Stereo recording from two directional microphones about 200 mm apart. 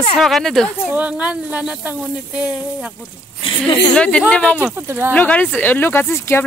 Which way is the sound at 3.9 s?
5° left (ahead or behind).